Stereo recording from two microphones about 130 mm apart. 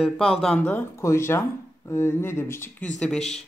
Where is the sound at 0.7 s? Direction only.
20° left (ahead or behind).